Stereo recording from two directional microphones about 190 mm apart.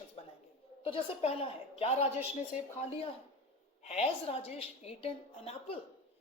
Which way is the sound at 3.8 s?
35° left (ahead or behind).